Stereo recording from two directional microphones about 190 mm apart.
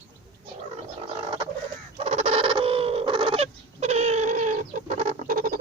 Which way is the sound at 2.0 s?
35° right (ahead or behind).